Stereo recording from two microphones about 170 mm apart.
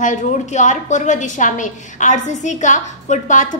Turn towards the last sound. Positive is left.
turn(degrees=50)  # may be behind; listen again after turning